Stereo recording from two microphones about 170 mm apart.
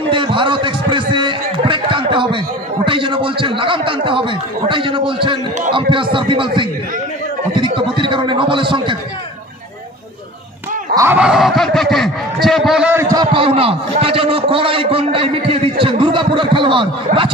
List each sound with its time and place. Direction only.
0.1 s a man's voice: 30° right (ahead or behind)
11.0 s speech: 10° right (ahead or behind)
12.9 s a man's voice: 20° right (ahead or behind)